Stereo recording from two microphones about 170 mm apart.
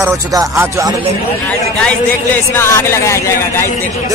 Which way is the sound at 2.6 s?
15° left (ahead or behind).